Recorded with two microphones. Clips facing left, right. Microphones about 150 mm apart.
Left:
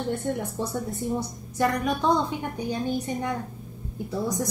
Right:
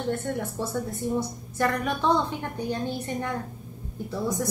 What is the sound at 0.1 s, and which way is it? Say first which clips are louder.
A woman's voice: left 1 dB; 15° left (ahead or behind).